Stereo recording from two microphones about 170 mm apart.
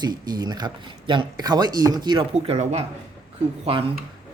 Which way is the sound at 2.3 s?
40° right (ahead or behind).